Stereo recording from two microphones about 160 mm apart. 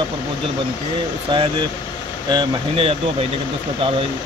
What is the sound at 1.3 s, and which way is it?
Speech, 30° right (ahead or behind).